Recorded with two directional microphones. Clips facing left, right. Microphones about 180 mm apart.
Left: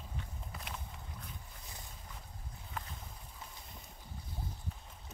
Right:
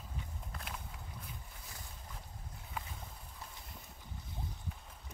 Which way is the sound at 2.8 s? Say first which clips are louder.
Even; 10° right (ahead or behind).